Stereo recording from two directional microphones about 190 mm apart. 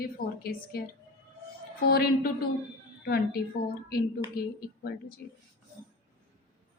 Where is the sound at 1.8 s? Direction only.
55° left (ahead or behind).